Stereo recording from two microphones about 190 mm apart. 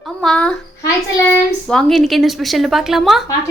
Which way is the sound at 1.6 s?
5° left (ahead or behind).